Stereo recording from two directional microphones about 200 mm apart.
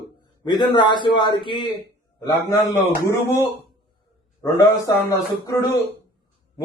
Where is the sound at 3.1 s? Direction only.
15° left (ahead or behind).